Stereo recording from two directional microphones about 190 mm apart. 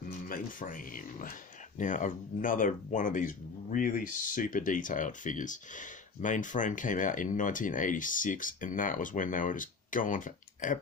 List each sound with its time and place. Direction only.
0.3 s speech: 45° left (ahead or behind)